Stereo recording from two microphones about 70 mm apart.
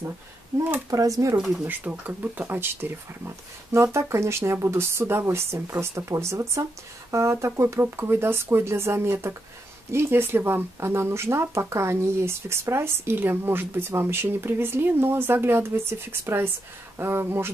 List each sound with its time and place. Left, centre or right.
0.8 s speech: right
1.6 s speech: right